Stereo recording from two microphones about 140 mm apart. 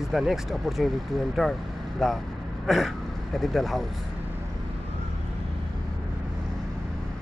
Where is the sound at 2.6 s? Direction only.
Centre (ahead or behind).